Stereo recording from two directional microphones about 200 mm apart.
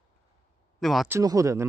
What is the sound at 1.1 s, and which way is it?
Speech, 15° right (ahead or behind).